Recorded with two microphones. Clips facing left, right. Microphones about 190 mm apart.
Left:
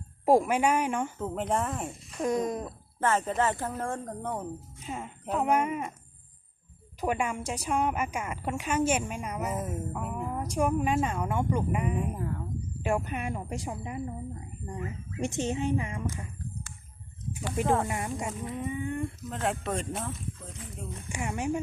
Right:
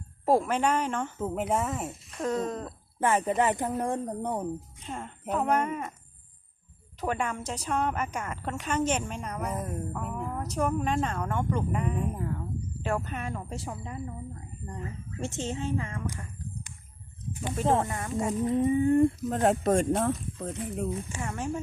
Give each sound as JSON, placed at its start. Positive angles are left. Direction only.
{"t": 0.3, "sound": "a woman's voice", "side_deg": 10}
{"t": 1.2, "sound": "speech", "side_deg": -5}
{"t": 2.2, "sound": "a woman's voice", "side_deg": 10}
{"t": 3.0, "sound": "speech", "side_deg": -15}
{"t": 4.8, "sound": "a woman's voice", "side_deg": 5}
{"t": 7.0, "sound": "a woman's voice", "side_deg": 10}
{"t": 12.8, "sound": "a woman's voice", "side_deg": 15}
{"t": 17.8, "sound": "a woman's voice", "side_deg": 15}
{"t": 18.4, "sound": "speech", "side_deg": -35}
{"t": 21.1, "sound": "a woman's voice", "side_deg": 15}